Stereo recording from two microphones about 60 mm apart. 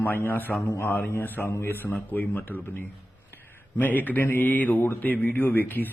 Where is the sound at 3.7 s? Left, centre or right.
Left.